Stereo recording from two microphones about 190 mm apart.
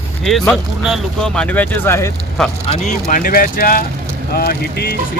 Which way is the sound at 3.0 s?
45° left (ahead or behind).